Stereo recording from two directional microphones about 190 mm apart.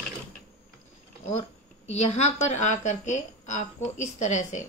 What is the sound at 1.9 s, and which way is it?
A woman's voice, 35° left (ahead or behind).